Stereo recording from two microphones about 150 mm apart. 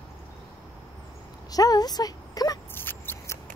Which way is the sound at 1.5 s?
25° left (ahead or behind).